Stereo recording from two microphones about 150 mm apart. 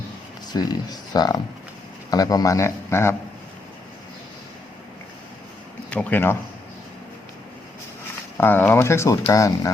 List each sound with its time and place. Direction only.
0.5 s speech: 25° left (ahead or behind)
5.9 s speech: 10° left (ahead or behind)
8.4 s speech: 10° left (ahead or behind)